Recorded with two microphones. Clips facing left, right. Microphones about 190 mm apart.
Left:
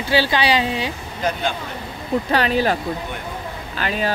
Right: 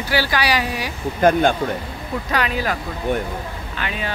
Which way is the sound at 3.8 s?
35° left (ahead or behind).